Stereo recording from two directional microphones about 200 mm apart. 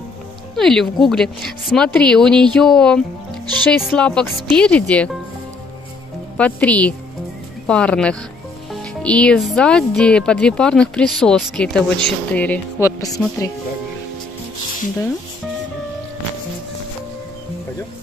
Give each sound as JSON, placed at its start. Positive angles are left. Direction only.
{"t": 0.6, "sound": "speech", "side_deg": 0}
{"t": 6.3, "sound": "speech", "side_deg": 5}